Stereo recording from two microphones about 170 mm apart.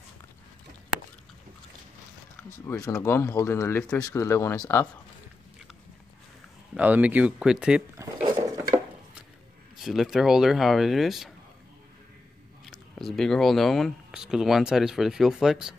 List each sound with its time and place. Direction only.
2.6 s speech: 20° left (ahead or behind)
6.7 s speech: 10° right (ahead or behind)
8.4 s dishes: 20° right (ahead or behind)
9.8 s speech: centre (ahead or behind)
12.6 s speech: centre (ahead or behind)